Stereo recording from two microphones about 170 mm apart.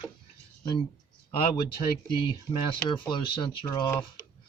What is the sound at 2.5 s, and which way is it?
Speech, 10° left (ahead or behind).